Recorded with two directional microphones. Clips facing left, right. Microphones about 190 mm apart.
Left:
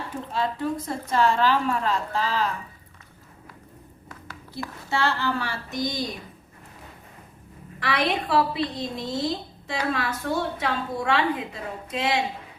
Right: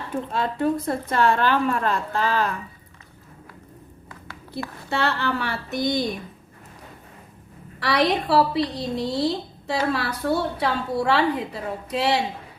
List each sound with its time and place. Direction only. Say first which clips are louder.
0.3 s a woman's voice: right 3 dB; 60° right (ahead or behind)
4.9 s a woman's voice: right 1 dB; 65° right (ahead or behind)
7.8 s a woman's voice: right 4 dB; 40° right (ahead or behind)